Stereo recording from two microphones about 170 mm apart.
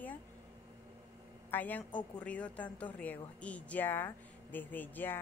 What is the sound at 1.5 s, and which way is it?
A woman's voice, 10° left (ahead or behind).